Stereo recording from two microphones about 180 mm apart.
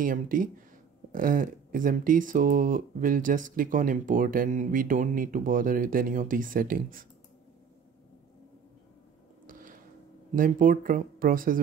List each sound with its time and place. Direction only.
0.0 s speech: 50° right (ahead or behind)
9.5 s a sound: 50° right (ahead or behind)
10.3 s speech: 50° right (ahead or behind)